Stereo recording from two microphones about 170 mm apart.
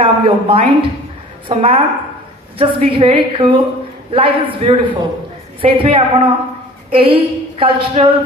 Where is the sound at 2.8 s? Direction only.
30° right (ahead or behind).